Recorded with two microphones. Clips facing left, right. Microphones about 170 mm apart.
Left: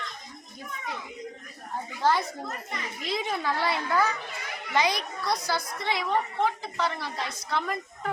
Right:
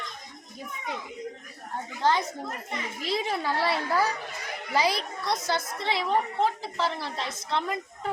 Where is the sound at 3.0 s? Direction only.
30° right (ahead or behind).